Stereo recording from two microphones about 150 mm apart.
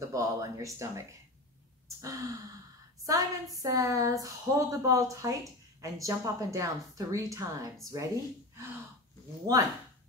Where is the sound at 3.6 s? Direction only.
20° right (ahead or behind).